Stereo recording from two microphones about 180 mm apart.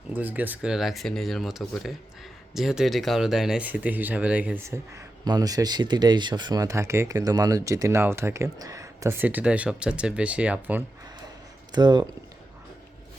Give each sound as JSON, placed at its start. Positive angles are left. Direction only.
{"t": 0.1, "sound": "speech", "side_deg": -10}
{"t": 11.7, "sound": "speech", "side_deg": -25}